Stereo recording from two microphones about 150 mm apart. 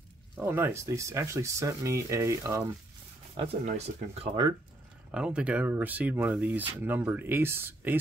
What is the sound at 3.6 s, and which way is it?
Speech, 45° right (ahead or behind).